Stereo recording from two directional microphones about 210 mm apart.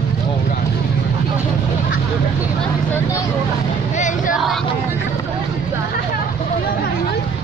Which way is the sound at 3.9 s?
35° left (ahead or behind).